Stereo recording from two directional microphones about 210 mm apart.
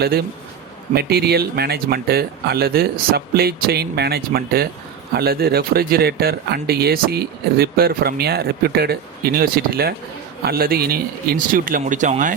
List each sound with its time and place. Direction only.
0.9 s speech: 50° right (ahead or behind)